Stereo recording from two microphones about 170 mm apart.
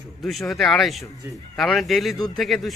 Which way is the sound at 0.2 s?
Centre (ahead or behind).